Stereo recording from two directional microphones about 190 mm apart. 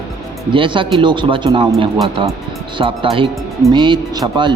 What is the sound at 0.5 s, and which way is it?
Speech, 25° right (ahead or behind).